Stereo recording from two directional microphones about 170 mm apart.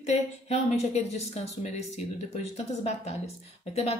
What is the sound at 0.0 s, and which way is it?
Speech, 40° left (ahead or behind).